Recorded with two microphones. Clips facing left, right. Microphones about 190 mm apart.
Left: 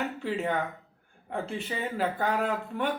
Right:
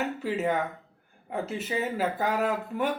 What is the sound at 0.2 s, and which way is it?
A man's voice, 5° right (ahead or behind).